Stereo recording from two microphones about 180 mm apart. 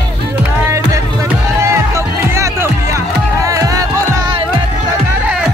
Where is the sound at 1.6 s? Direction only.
15° right (ahead or behind).